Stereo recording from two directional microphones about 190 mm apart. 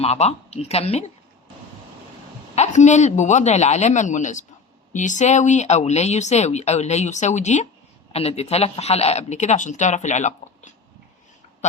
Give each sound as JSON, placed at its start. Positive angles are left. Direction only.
{"t": 0.0, "sound": "speech", "side_deg": 35}
{"t": 2.6, "sound": "speech", "side_deg": 40}